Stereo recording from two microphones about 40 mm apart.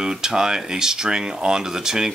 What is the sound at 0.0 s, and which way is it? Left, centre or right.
Speech, centre.